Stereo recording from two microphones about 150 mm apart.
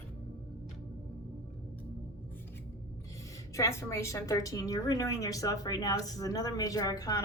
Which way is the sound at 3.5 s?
20° left (ahead or behind).